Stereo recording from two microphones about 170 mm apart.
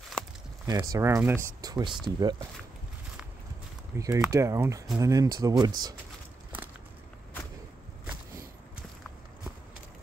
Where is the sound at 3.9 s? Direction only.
15° right (ahead or behind).